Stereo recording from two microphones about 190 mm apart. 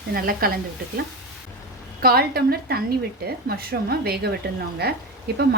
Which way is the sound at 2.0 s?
55° right (ahead or behind).